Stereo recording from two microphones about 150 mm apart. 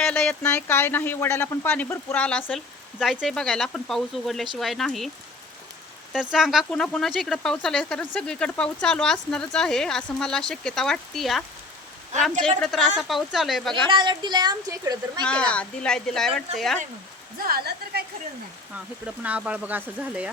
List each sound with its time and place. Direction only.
0.0 s speech: 5° left (ahead or behind)
2.5 s speech: centre (ahead or behind)
6.1 s speech: centre (ahead or behind)
13.0 s speech: centre (ahead or behind)
13.9 s a woman's voice: 30° right (ahead or behind)
15.3 s speech: 5° left (ahead or behind)
17.3 s speech: 80° right
19.0 s speech: 10° right (ahead or behind)